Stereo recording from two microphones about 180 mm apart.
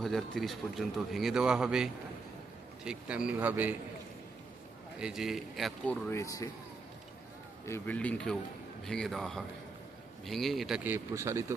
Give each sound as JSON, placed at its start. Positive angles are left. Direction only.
{"t": 0.0, "sound": "a man's voice", "side_deg": 0}
{"t": 4.9, "sound": "a man's voice", "side_deg": -5}
{"t": 7.6, "sound": "a man's voice", "side_deg": 10}
{"t": 10.8, "sound": "a man's voice", "side_deg": -15}